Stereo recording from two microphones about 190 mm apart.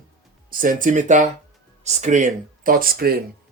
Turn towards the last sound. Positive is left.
turn(degrees=-50)  # may be behind; listen again after turning